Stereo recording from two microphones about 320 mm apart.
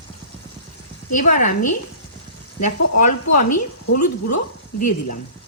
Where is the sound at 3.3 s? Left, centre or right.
Left.